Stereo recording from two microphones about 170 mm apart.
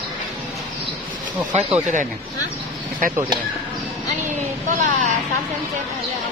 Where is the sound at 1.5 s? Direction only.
35° right (ahead or behind).